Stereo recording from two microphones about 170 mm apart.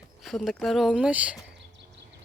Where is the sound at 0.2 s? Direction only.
Centre (ahead or behind).